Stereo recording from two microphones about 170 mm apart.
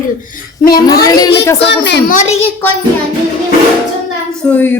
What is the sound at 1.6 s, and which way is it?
Speech, 90° left.